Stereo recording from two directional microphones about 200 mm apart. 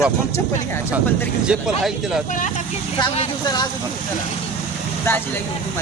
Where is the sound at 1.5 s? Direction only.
Centre (ahead or behind).